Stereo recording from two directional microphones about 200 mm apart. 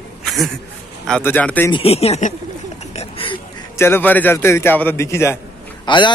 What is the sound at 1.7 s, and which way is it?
Speech, 30° left (ahead or behind).